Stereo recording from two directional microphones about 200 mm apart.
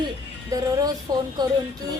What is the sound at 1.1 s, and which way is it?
Speech, 20° right (ahead or behind).